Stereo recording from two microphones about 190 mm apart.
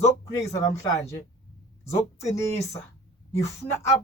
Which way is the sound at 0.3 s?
15° left (ahead or behind).